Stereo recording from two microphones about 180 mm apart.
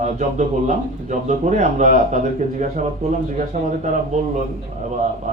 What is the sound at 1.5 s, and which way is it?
Speech, 40° right (ahead or behind).